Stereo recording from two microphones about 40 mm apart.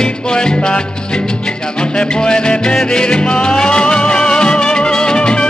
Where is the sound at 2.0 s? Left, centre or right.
Left.